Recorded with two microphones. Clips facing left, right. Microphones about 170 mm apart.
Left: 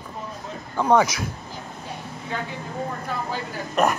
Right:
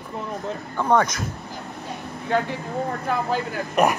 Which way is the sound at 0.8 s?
5° left (ahead or behind).